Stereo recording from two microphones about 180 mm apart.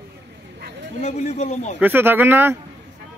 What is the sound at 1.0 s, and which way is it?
Speech, 40° left (ahead or behind).